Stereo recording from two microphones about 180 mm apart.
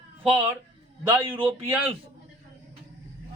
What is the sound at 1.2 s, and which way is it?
Speech, 30° right (ahead or behind).